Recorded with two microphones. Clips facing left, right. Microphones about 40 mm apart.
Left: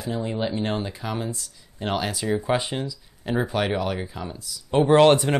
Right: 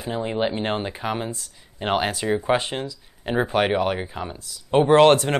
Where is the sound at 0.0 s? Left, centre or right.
Right.